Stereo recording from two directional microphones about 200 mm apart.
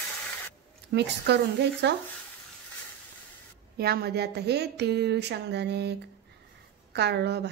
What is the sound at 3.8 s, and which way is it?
Speech, 50° right (ahead or behind).